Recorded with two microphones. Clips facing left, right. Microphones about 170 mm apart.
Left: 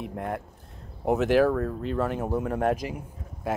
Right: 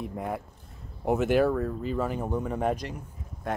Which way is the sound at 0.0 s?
Centre (ahead or behind).